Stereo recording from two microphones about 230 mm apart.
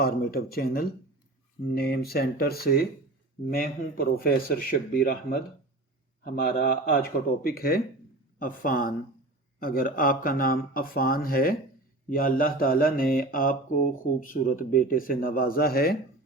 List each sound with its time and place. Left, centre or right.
0.0 s mantra: left
1.7 s speech: left
3.5 s mantra: left